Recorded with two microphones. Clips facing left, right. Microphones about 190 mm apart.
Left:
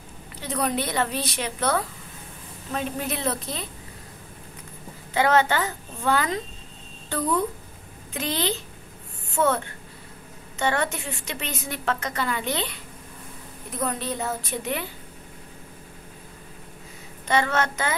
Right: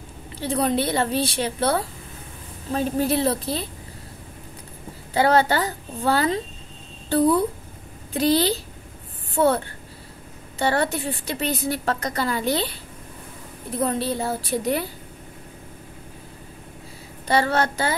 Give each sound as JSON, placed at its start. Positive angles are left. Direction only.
{"t": 0.4, "sound": "a woman's voice", "side_deg": -30}
{"t": 5.1, "sound": "a woman's voice", "side_deg": -35}
{"t": 10.6, "sound": "a woman's voice", "side_deg": -35}
{"t": 17.3, "sound": "a woman's voice", "side_deg": -35}